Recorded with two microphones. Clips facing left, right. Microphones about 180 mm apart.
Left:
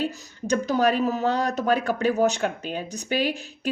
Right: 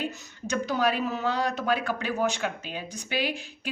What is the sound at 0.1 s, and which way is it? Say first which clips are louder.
A woman's voice: left 6 dB; 40° left (ahead or behind).